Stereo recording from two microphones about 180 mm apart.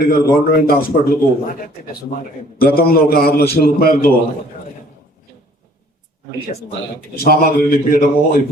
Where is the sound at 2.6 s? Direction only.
55° left (ahead or behind).